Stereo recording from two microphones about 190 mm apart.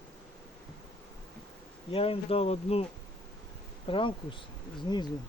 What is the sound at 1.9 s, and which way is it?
Speech, 30° left (ahead or behind).